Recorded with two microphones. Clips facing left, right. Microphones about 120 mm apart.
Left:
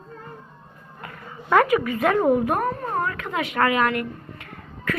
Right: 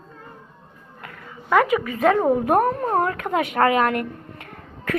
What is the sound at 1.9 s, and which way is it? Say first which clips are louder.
Speech: right 3 dB; 30° right (ahead or behind).